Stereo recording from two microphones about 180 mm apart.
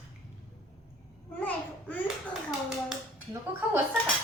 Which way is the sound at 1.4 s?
10° left (ahead or behind).